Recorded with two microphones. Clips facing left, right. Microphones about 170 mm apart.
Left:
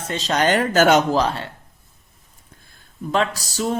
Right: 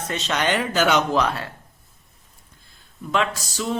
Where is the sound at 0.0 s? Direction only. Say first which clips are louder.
Left 4 dB; 30° left (ahead or behind).